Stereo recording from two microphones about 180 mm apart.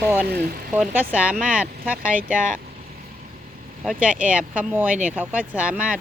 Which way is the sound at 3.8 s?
5° right (ahead or behind).